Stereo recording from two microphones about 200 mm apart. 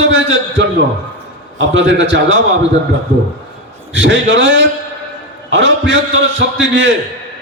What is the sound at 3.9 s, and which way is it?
A man's voice, 65° right (ahead or behind).